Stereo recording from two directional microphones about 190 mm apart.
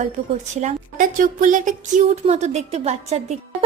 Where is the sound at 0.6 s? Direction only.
45° right (ahead or behind).